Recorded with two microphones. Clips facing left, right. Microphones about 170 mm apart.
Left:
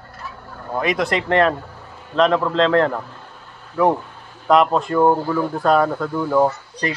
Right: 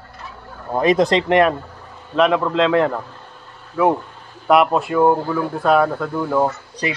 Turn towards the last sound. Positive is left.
turn(degrees=-5)  # may be behind; listen again after turning